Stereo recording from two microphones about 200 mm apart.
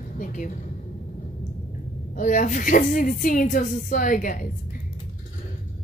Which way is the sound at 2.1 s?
40° left (ahead or behind).